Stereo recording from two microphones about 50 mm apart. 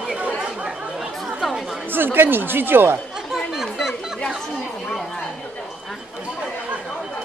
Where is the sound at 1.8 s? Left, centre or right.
Right.